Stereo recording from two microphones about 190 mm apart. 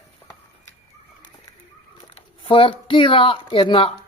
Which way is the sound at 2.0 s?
30° left (ahead or behind).